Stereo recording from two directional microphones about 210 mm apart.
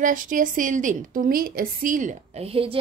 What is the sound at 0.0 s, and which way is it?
A woman's voice, 40° right (ahead or behind).